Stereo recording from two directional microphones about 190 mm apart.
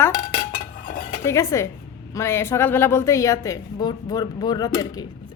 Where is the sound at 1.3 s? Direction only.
15° left (ahead or behind).